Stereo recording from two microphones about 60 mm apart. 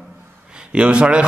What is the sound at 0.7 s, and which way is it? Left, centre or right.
Speech, centre.